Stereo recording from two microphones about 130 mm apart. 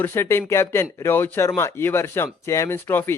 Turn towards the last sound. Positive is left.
turn(degrees=15)  # may be behind; listen again after turning